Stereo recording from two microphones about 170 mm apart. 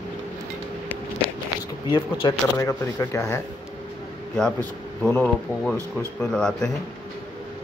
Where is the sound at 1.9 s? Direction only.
25° left (ahead or behind).